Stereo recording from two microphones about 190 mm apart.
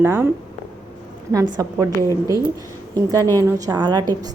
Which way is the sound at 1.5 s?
20° right (ahead or behind).